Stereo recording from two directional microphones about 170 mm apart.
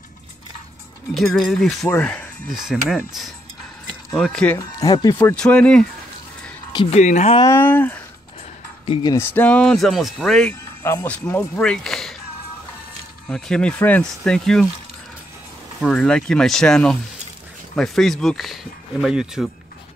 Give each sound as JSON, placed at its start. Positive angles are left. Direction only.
{"t": 1.1, "sound": "speech", "side_deg": 0}
{"t": 2.5, "sound": "speech", "side_deg": 0}
{"t": 4.6, "sound": "speech", "side_deg": 20}
{"t": 5.3, "sound": "speech", "side_deg": 5}
{"t": 7.0, "sound": "speech", "side_deg": 45}
{"t": 7.4, "sound": "speech", "side_deg": 15}
{"t": 8.8, "sound": "speech", "side_deg": 35}
{"t": 9.1, "sound": "speech", "side_deg": 10}
{"t": 10.8, "sound": "speech", "side_deg": 15}
{"t": 13.3, "sound": "speech", "side_deg": 5}
{"t": 15.8, "sound": "speech", "side_deg": 5}